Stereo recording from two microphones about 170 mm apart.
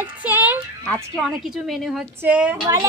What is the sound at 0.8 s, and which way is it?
A woman's voice, 5° left (ahead or behind).